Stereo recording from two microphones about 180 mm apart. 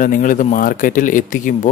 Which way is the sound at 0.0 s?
50° left (ahead or behind).